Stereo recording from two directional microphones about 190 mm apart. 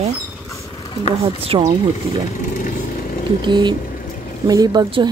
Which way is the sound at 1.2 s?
30° right (ahead or behind).